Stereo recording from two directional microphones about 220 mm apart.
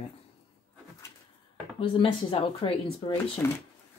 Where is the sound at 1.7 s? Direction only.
25° left (ahead or behind).